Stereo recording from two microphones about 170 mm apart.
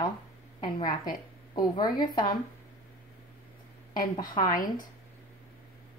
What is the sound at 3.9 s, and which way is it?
Speech, 25° left (ahead or behind).